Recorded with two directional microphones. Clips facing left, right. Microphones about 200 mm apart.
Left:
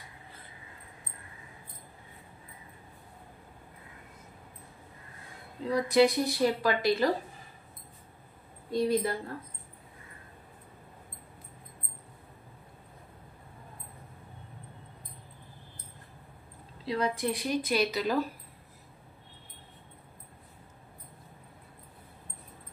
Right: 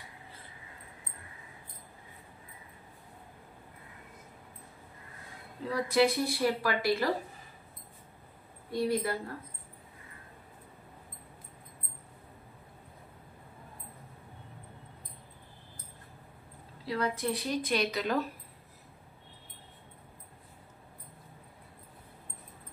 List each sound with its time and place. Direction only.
5.7 s a woman's voice: 15° left (ahead or behind)
8.7 s a woman's voice: 20° left (ahead or behind)
16.8 s a woman's voice: 15° left (ahead or behind)